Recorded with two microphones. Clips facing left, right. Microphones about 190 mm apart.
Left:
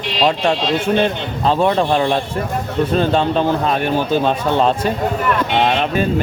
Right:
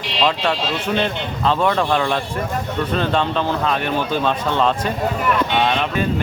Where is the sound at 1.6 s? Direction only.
25° left (ahead or behind).